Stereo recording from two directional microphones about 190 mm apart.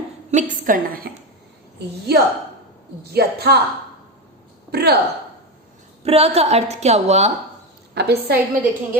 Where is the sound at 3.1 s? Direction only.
55° right (ahead or behind).